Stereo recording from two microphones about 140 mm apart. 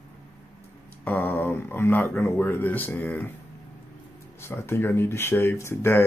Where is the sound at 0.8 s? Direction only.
15° left (ahead or behind).